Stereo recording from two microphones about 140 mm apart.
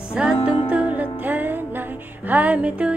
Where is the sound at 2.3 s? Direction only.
10° right (ahead or behind).